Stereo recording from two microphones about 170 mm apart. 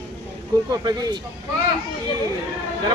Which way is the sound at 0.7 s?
25° right (ahead or behind).